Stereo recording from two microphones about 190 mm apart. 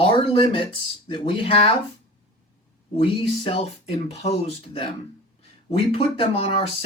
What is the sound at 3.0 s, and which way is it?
Speech, 30° left (ahead or behind).